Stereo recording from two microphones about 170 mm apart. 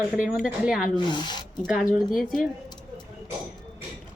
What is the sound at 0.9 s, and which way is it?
Speech, 25° left (ahead or behind).